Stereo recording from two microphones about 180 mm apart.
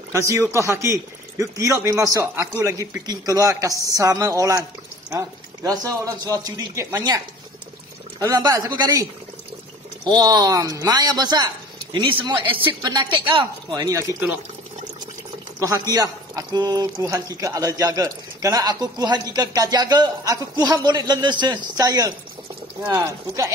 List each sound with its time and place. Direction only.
0.1 s speech: 15° right (ahead or behind)
8.2 s speech: 20° right (ahead or behind)
10.0 s speech: 20° right (ahead or behind)
15.6 s speech: 20° right (ahead or behind)